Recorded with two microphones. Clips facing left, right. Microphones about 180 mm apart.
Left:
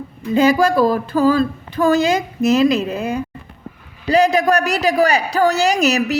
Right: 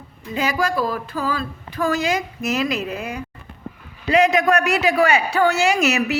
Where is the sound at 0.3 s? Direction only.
30° left (ahead or behind).